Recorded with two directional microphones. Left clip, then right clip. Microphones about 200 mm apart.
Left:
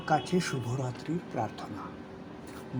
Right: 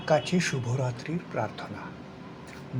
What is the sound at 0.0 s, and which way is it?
Speech, 15° left (ahead or behind).